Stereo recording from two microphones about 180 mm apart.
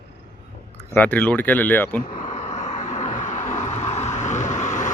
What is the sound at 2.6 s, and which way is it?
Vehicle, 40° left (ahead or behind).